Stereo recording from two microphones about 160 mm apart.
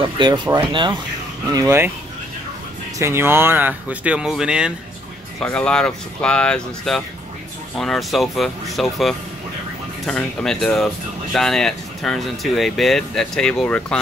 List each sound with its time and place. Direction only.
0.0 s speech: 30° right (ahead or behind)
1.5 s speech: 20° right (ahead or behind)
3.0 s speech: 15° right (ahead or behind)
5.4 s speech: 5° left (ahead or behind)